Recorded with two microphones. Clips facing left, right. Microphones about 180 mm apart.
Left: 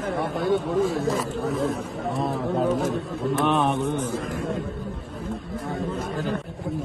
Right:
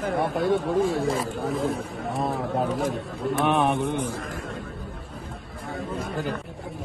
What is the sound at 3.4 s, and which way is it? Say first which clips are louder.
Speech: right 1 dB; 15° right (ahead or behind).